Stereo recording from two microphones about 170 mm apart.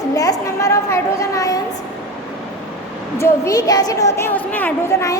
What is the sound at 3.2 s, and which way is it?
A woman's voice, 15° left (ahead or behind).